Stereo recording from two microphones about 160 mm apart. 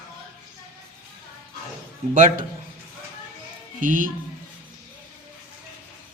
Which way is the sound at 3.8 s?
55° right (ahead or behind).